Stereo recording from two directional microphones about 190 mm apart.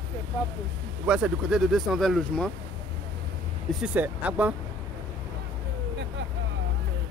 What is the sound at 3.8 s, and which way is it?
Speech, 5° right (ahead or behind).